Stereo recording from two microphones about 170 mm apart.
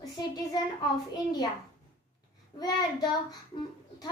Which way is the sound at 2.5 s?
25° left (ahead or behind).